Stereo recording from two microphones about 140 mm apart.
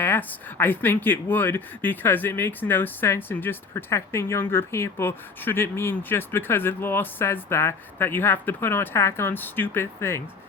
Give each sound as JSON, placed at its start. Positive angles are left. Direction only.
{"t": 0.0, "sound": "speech", "side_deg": 15}